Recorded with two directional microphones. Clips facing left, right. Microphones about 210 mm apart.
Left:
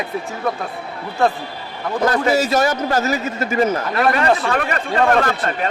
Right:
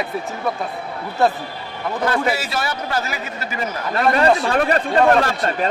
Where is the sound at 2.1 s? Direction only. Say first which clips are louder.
Left 6 dB; 40° left (ahead or behind).